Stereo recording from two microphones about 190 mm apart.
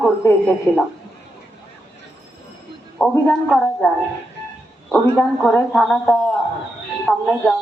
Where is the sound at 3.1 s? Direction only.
10° left (ahead or behind).